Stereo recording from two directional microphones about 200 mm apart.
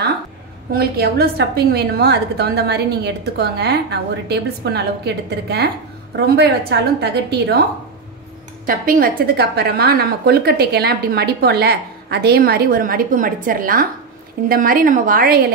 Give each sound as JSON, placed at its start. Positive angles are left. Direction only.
{"t": 0.7, "sound": "a woman's voice", "side_deg": -50}
{"t": 8.6, "sound": "a woman's voice", "side_deg": -45}